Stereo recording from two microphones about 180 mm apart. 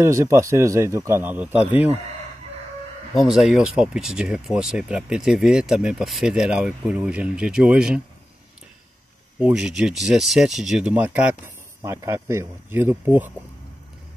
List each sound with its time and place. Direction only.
0.0 s speech: 15° right (ahead or behind)
3.2 s speech: centre (ahead or behind)
9.4 s speech: 5° right (ahead or behind)